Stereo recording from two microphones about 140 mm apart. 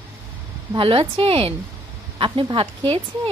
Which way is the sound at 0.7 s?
40° right (ahead or behind).